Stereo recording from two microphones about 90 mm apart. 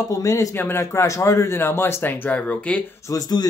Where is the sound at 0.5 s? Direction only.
25° left (ahead or behind).